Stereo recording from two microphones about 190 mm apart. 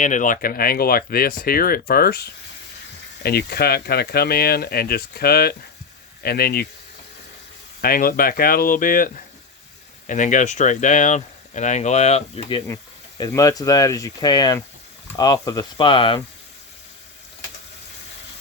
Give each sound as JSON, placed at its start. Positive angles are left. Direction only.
{"t": 0.0, "sound": "speech", "side_deg": 40}
{"t": 3.2, "sound": "speech", "side_deg": 55}
{"t": 7.8, "sound": "speech", "side_deg": 50}
{"t": 12.6, "sound": "speech", "side_deg": 15}